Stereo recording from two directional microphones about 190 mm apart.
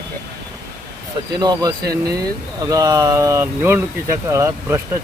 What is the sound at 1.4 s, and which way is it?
Speech, 20° right (ahead or behind).